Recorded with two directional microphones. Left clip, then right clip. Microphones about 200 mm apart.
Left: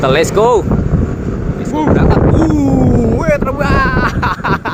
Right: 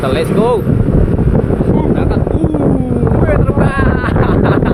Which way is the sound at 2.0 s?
30° left (ahead or behind).